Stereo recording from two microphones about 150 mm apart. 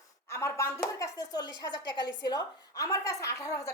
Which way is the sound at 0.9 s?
25° left (ahead or behind).